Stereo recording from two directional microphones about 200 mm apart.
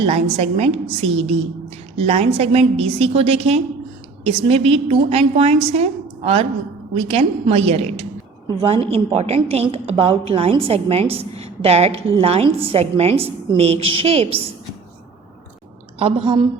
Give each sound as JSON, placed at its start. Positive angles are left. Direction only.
{"t": 0.0, "sound": "a woman's voice", "side_deg": -30}
{"t": 16.0, "sound": "a woman's voice", "side_deg": -25}